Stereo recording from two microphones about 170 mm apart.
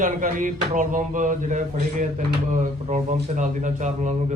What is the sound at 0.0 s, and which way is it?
Speech, 50° right (ahead or behind).